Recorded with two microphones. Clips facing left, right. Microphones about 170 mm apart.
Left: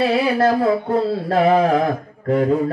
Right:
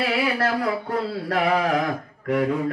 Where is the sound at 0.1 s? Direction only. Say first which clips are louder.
Left 6 dB; 25° left (ahead or behind).